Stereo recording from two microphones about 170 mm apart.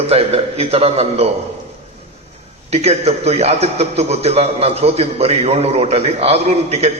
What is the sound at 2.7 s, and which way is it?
A man's voice, 40° right (ahead or behind).